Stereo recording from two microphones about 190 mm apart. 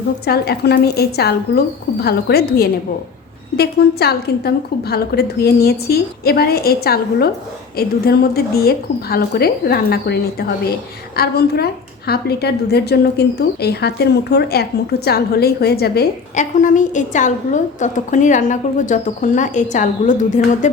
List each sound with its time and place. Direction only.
0.3 s a woman's voice: 55° left (ahead or behind)
16.3 s a woman's voice: 40° left (ahead or behind)